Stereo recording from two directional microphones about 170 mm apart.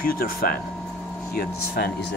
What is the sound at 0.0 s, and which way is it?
Speech, 60° left (ahead or behind).